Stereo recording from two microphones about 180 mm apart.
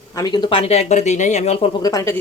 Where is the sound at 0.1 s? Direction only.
20° left (ahead or behind).